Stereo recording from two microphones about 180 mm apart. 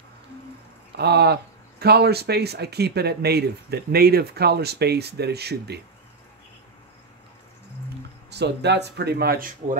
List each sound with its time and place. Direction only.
0.9 s speech: 65° right (ahead or behind)
8.3 s speech: 70° right (ahead or behind)